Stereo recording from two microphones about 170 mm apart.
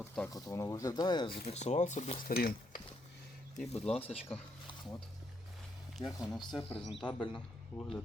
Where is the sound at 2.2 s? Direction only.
60° left (ahead or behind).